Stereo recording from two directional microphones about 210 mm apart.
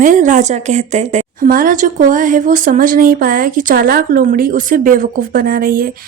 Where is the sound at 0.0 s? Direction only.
35° right (ahead or behind).